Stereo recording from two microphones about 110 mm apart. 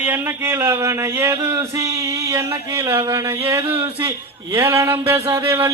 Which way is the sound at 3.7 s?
20° right (ahead or behind).